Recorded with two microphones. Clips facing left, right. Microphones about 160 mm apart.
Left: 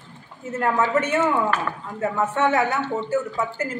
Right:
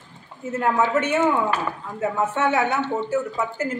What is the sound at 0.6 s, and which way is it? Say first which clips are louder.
A man's voice: even; 10° right (ahead or behind).